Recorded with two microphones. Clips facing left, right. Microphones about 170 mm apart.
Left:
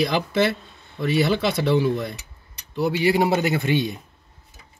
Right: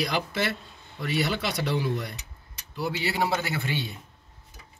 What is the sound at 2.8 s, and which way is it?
A man's voice, 15° left (ahead or behind).